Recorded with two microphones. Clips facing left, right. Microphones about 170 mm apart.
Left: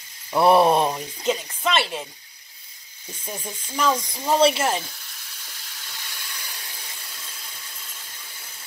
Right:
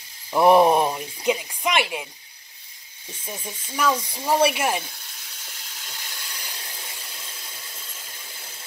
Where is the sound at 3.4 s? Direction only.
10° right (ahead or behind).